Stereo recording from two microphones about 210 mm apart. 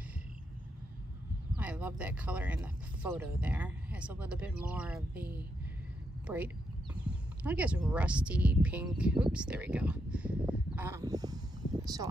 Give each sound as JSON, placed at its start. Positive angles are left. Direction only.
{"t": 1.6, "sound": "speech", "side_deg": -5}